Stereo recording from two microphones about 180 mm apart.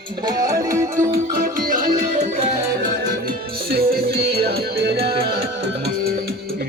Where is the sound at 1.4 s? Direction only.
50° right (ahead or behind).